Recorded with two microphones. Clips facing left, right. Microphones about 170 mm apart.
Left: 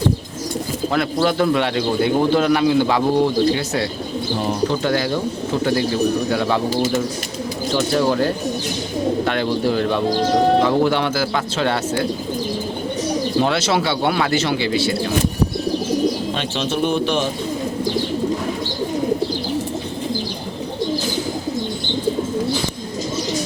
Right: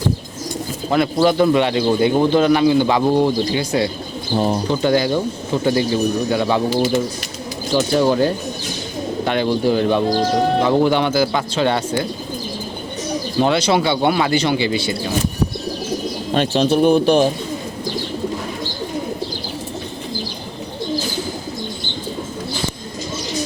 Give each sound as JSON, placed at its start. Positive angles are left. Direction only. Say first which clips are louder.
{"t": 0.9, "sound": "speech", "louder": "right 4 dB", "side_deg": 0}
{"t": 6.3, "sound": "speech", "louder": "right 2 dB", "side_deg": -5}
{"t": 13.4, "sound": "speech", "louder": "right 6 dB", "side_deg": 0}
{"t": 16.3, "sound": "speech", "louder": "right 6 dB", "side_deg": -40}